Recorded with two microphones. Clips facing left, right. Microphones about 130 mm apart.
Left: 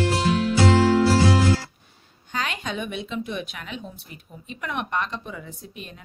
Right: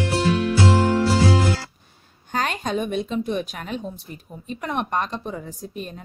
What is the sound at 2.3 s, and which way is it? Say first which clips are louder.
A woman's voice: right 5 dB; 45° right (ahead or behind).